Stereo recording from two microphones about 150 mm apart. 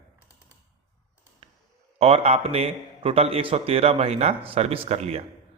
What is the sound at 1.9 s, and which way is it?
A man's voice, 40° right (ahead or behind).